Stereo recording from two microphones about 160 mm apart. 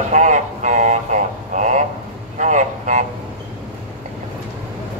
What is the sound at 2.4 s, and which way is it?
Vehicle, 50° right (ahead or behind).